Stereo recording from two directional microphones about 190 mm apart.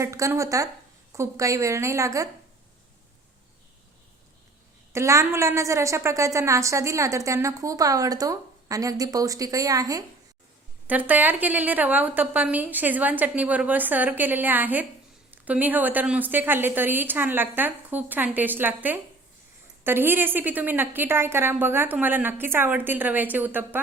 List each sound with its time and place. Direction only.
0.0 s a woman's voice: 15° right (ahead or behind)
4.9 s a woman's voice: 15° right (ahead or behind)